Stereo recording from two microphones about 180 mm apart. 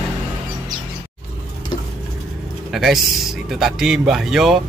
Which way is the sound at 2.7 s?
Centre (ahead or behind).